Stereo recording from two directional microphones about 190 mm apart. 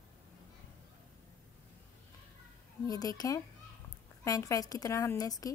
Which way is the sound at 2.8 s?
20° left (ahead or behind).